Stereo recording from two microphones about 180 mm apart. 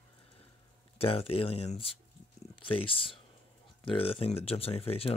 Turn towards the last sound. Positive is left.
turn(degrees=30)  # may be behind; listen again after turning